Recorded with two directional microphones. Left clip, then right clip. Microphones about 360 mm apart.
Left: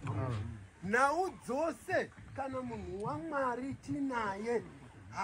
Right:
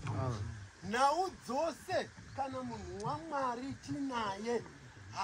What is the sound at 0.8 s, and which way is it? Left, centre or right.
Speech, centre.